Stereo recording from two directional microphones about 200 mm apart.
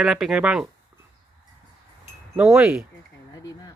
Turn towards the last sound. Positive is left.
turn(degrees=15)  # may be behind; listen again after turning